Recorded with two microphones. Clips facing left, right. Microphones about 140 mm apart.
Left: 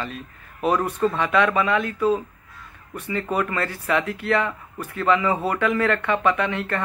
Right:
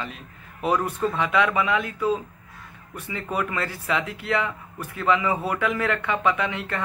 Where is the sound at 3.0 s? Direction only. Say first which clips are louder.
Left 4 dB; 10° right (ahead or behind).